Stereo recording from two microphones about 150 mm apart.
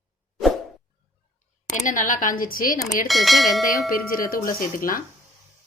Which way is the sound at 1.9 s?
60° left (ahead or behind).